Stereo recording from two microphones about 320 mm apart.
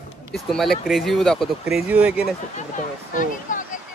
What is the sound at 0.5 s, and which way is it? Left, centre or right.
Speech, centre.